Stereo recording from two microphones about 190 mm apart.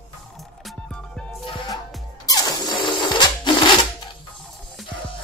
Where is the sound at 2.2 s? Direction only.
20° left (ahead or behind).